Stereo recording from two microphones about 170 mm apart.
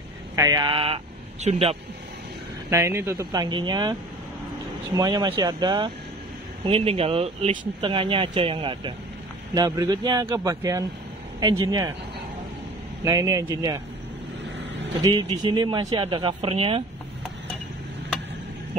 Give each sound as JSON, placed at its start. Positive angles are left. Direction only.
{"t": 0.4, "sound": "a man's voice", "side_deg": -25}
{"t": 2.7, "sound": "speech", "side_deg": -15}
{"t": 4.9, "sound": "speech", "side_deg": -25}
{"t": 9.5, "sound": "speech", "side_deg": -20}
{"t": 13.0, "sound": "speech", "side_deg": -20}
{"t": 15.0, "sound": "speech", "side_deg": -25}